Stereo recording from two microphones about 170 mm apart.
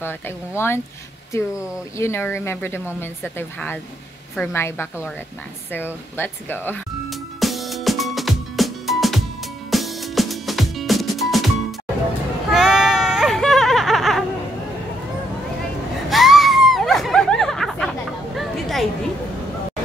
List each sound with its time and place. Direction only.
0.6 s speech: 15° left (ahead or behind)
7.1 s music: centre (ahead or behind)
12.4 s baby cry: centre (ahead or behind)
16.1 s a sound: centre (ahead or behind)